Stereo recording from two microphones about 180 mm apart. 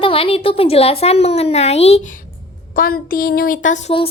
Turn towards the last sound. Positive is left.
turn(degrees=35)  # may be behind; listen again after turning